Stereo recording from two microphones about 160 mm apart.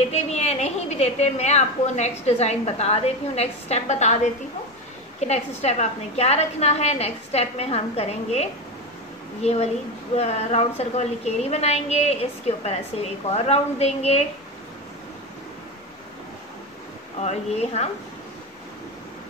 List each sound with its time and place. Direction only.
0.1 s a woman's voice: 45° left (ahead or behind)
17.2 s a woman's voice: 45° left (ahead or behind)